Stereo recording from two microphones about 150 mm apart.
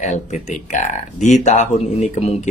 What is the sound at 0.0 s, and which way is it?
Speech, 55° left (ahead or behind).